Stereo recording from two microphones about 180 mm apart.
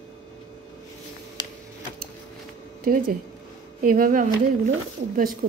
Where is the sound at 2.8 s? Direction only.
55° right (ahead or behind).